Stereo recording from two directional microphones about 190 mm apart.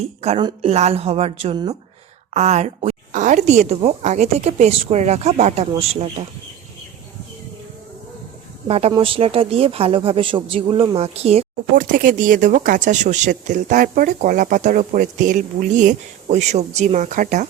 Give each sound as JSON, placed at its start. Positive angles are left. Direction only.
{"t": 0.0, "sound": "a woman's voice", "side_deg": -35}
{"t": 2.3, "sound": "a woman's voice", "side_deg": -35}
{"t": 8.6, "sound": "a woman's voice", "side_deg": -30}
{"t": 11.8, "sound": "speech", "side_deg": -45}